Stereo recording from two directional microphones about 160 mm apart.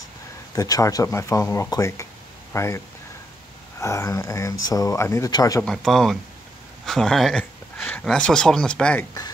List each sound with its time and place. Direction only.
0.6 s speech: 20° left (ahead or behind)
3.8 s speech: 20° left (ahead or behind)
5.6 s speech: 5° left (ahead or behind)
7.7 s a sound: 15° left (ahead or behind)
8.0 s speech: 5° left (ahead or behind)